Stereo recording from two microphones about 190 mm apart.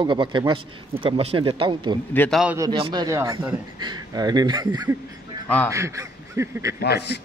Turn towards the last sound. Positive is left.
turn(degrees=60)  # may be behind; listen again after turning